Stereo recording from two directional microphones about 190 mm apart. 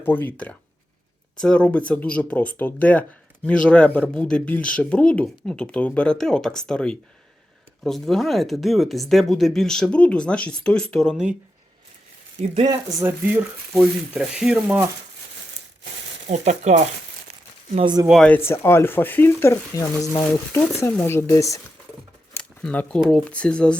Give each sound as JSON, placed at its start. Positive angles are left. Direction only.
{"t": 0.0, "sound": "speech", "side_deg": 10}
{"t": 12.6, "sound": "speech", "side_deg": -20}
{"t": 16.2, "sound": "crumpling", "side_deg": -40}
{"t": 18.0, "sound": "speech", "side_deg": 0}
{"t": 18.3, "sound": "speech", "side_deg": 15}